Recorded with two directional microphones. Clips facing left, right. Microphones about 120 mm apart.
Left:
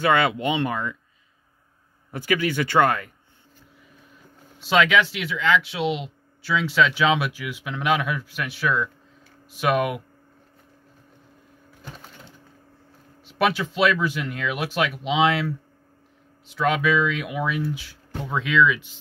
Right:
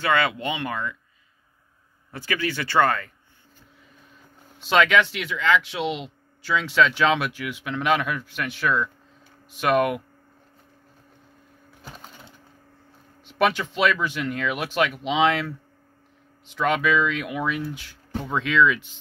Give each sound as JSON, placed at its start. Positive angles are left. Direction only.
{"t": 0.0, "sound": "speech", "side_deg": 20}
{"t": 2.0, "sound": "speech", "side_deg": 15}
{"t": 4.6, "sound": "speech", "side_deg": 5}
{"t": 13.2, "sound": "speech", "side_deg": 5}